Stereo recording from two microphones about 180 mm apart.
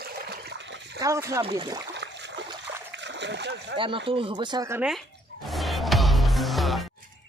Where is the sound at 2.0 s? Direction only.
75° right (ahead or behind).